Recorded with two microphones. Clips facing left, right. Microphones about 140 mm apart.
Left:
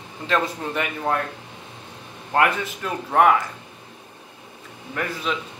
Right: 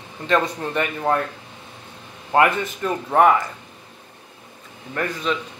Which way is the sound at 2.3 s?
Centre (ahead or behind).